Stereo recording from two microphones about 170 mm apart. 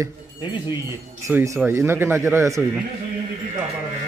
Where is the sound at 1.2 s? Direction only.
15° right (ahead or behind).